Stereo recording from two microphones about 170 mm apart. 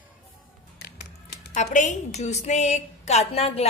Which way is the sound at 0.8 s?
70° left (ahead or behind).